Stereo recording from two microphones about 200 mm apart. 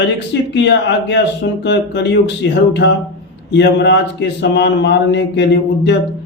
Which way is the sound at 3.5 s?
60° left (ahead or behind).